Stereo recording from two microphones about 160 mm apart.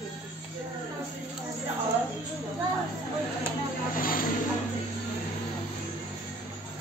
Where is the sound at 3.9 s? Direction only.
60° left (ahead or behind).